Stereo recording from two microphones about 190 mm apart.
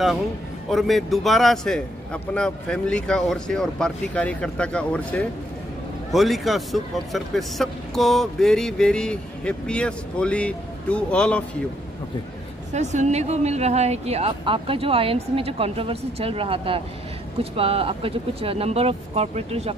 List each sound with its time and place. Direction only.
0.7 s speech: centre (ahead or behind)
12.7 s a woman's voice: 40° right (ahead or behind)